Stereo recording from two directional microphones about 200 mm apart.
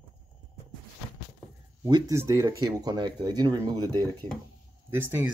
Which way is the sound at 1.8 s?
15° right (ahead or behind).